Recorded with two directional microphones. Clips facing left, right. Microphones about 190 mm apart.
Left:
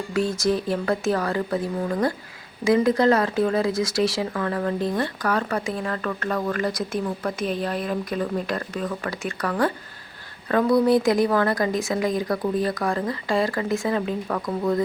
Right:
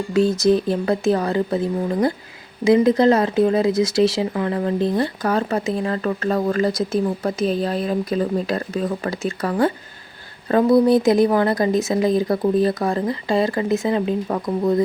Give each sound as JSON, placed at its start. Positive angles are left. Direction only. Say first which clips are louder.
{"t": 0.1, "sound": "speech", "louder": "right 6 dB", "side_deg": -20}